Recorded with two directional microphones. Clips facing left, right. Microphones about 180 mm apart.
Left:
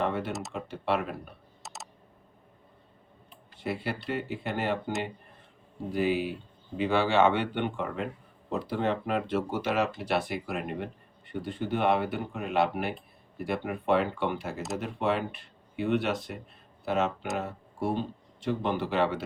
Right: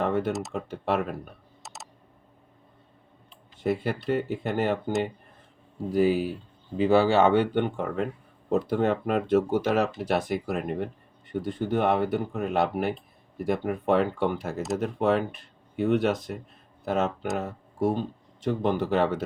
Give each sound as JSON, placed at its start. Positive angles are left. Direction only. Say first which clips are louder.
{"t": 0.0, "sound": "computer keyboard", "louder": "right 4 dB", "side_deg": -45}
{"t": 0.5, "sound": "speech", "louder": "right 2 dB", "side_deg": -45}
{"t": 1.6, "sound": "a sound", "louder": "even", "side_deg": 0}
{"t": 3.6, "sound": "speech", "louder": "right 6 dB", "side_deg": -45}
{"t": 5.9, "sound": "speech", "louder": "right 5 dB", "side_deg": -40}